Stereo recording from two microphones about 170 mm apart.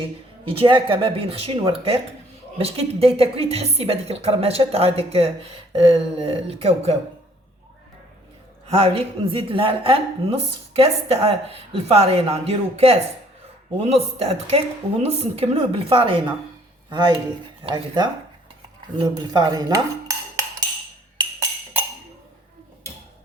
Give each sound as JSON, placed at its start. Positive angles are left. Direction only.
{"t": 0.4, "sound": "a woman's voice", "side_deg": -30}
{"t": 8.6, "sound": "a woman's voice", "side_deg": -35}
{"t": 16.9, "sound": "cutlery", "side_deg": -25}